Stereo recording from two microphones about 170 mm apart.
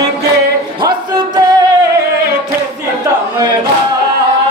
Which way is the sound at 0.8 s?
25° right (ahead or behind).